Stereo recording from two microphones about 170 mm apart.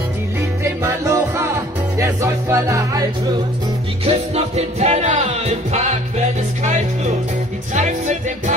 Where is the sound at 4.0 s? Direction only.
35° right (ahead or behind).